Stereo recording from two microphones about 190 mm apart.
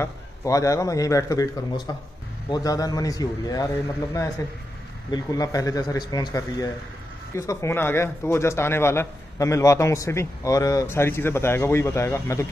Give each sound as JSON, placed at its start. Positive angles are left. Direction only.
{"t": 0.0, "sound": "a man's voice", "side_deg": 15}
{"t": 5.1, "sound": "a man's voice", "side_deg": 20}